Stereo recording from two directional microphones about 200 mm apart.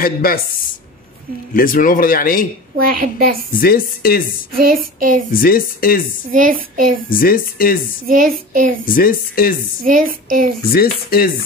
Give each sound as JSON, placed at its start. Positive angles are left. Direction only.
{"t": 0.0, "sound": "speech", "side_deg": 45}
{"t": 1.5, "sound": "speech", "side_deg": 45}
{"t": 2.8, "sound": "child singing", "side_deg": -45}
{"t": 3.5, "sound": "speech", "side_deg": 45}
{"t": 4.6, "sound": "child singing", "side_deg": -45}
{"t": 5.3, "sound": "speech", "side_deg": 45}
{"t": 6.3, "sound": "child singing", "side_deg": -45}
{"t": 7.1, "sound": "speech", "side_deg": 45}
{"t": 8.1, "sound": "child singing", "side_deg": -45}
{"t": 8.8, "sound": "speech", "side_deg": 45}
{"t": 9.8, "sound": "child singing", "side_deg": -45}
{"t": 10.7, "sound": "speech", "side_deg": 50}